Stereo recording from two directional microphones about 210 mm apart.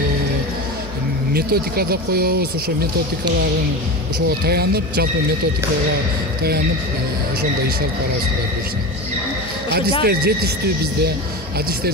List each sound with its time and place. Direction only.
1.3 s speech: 45° right (ahead or behind)
4.5 s speech: 50° right (ahead or behind)
10.0 s speech: 50° right (ahead or behind)